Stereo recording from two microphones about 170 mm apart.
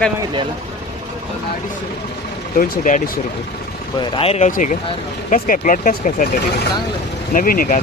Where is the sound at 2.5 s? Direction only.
60° left (ahead or behind).